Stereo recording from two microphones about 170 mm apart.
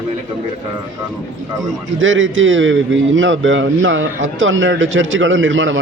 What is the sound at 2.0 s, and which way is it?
A man's voice, 90° right.